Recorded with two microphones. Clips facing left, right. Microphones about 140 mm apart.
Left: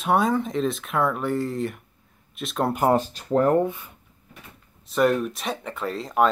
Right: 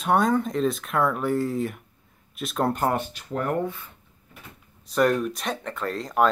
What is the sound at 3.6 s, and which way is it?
Speech, 20° left (ahead or behind).